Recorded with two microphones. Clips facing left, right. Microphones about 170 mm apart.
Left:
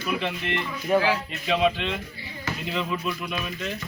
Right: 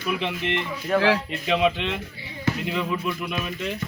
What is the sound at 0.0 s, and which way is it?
Speech, 20° right (ahead or behind).